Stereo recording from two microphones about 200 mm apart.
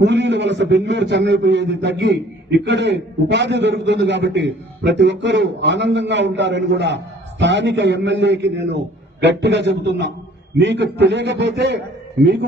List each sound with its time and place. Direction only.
0.0 s a man's voice: 60° right (ahead or behind)